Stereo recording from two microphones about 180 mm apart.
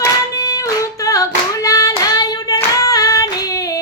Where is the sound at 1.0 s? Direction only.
20° left (ahead or behind).